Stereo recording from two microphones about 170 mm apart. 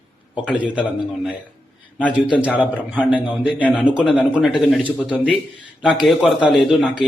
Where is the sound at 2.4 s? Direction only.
5° right (ahead or behind).